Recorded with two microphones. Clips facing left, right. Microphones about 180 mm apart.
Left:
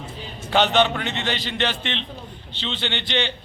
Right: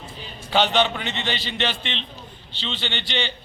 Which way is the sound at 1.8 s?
55° left (ahead or behind).